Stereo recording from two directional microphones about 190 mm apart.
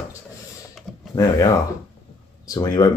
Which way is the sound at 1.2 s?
20° left (ahead or behind).